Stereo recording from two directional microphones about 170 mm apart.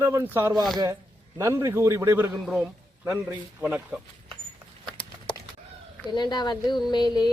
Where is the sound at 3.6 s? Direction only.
10° right (ahead or behind).